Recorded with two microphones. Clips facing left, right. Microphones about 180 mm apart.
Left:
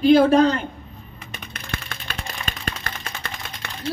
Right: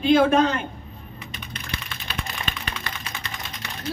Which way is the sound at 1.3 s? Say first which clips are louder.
Left 3 dB; 50° left (ahead or behind).